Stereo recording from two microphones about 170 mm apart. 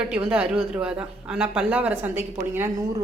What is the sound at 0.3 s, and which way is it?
A woman's voice, 5° right (ahead or behind).